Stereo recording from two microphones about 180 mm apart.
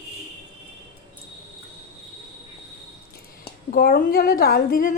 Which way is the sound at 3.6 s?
55° left (ahead or behind).